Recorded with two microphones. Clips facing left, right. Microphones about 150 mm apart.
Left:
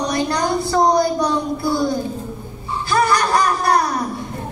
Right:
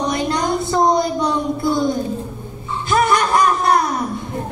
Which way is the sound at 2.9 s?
20° right (ahead or behind).